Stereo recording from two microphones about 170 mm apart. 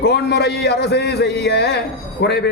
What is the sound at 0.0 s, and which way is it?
Music, 70° left (ahead or behind).